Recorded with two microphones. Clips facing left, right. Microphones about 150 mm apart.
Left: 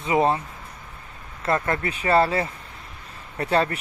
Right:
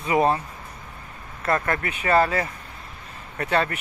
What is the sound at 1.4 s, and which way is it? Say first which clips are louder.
Speech: even; 25° left (ahead or behind).